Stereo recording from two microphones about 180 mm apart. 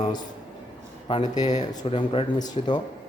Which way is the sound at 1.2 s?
40° left (ahead or behind).